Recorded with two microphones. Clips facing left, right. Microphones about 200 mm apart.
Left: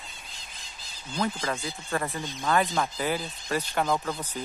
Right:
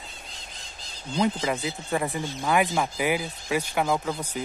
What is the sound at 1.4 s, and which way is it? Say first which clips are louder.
Speech: right 4 dB; 15° right (ahead or behind).